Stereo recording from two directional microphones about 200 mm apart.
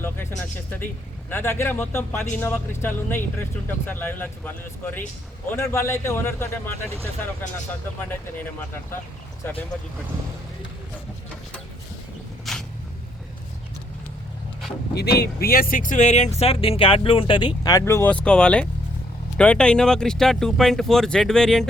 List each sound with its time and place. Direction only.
0.0 s speech: 10° left (ahead or behind)
9.4 s speech: 10° left (ahead or behind)
12.5 s vehicle: centre (ahead or behind)
14.9 s speech: 55° left (ahead or behind); by 21.7 s 5° left (ahead or behind)